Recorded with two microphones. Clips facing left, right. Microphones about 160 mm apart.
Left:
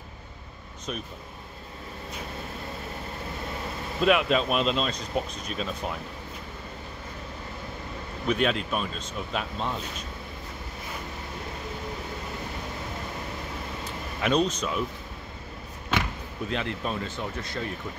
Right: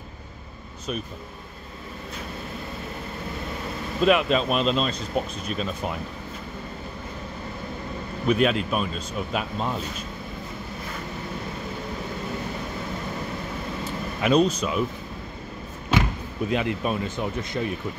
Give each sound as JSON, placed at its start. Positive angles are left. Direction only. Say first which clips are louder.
{"t": 4.0, "sound": "speech", "louder": "right 2 dB", "side_deg": 0}
{"t": 8.3, "sound": "speech", "louder": "right 4 dB", "side_deg": -5}
{"t": 14.2, "sound": "speech", "louder": "right 4 dB", "side_deg": -5}
{"t": 16.4, "sound": "speech", "louder": "right 5 dB", "side_deg": -10}